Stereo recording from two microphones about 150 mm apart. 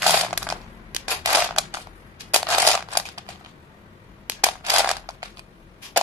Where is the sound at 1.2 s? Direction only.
15° right (ahead or behind).